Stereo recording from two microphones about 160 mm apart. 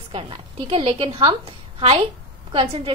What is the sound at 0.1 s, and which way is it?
A woman's voice, 35° right (ahead or behind).